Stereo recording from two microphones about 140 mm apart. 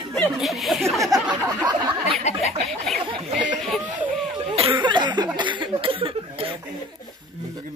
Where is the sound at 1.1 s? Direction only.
25° right (ahead or behind).